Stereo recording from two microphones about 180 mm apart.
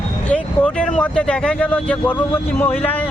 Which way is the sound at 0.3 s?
5° left (ahead or behind).